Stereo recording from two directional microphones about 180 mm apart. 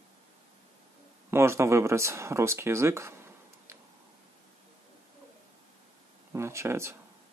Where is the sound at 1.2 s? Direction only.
15° right (ahead or behind).